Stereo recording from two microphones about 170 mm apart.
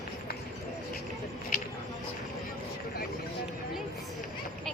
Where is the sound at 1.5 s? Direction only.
55° left (ahead or behind).